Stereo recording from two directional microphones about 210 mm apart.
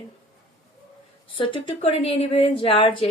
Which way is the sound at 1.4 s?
25° left (ahead or behind).